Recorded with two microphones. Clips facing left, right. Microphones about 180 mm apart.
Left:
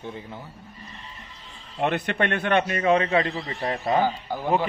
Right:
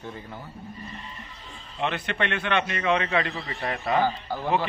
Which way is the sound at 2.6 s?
40° left (ahead or behind).